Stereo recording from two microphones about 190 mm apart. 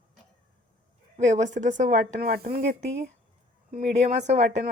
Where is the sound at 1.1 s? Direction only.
40° right (ahead or behind).